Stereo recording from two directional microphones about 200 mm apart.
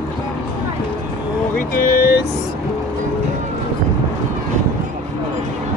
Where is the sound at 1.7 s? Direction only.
45° left (ahead or behind).